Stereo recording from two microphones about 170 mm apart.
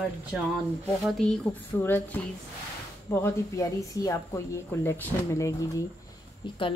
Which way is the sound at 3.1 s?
15° left (ahead or behind).